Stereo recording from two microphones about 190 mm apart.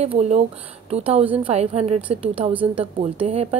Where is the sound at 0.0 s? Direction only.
35° right (ahead or behind).